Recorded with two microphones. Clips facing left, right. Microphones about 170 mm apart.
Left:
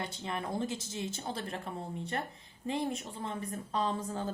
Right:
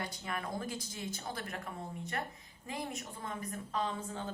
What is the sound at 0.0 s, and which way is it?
A woman's voice, 25° left (ahead or behind).